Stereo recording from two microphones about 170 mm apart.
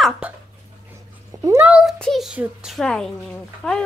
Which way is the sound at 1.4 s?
20° right (ahead or behind).